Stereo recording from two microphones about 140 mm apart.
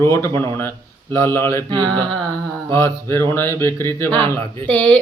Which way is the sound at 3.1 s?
15° left (ahead or behind).